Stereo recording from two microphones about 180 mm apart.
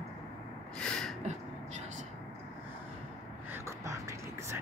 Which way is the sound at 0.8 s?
5° left (ahead or behind).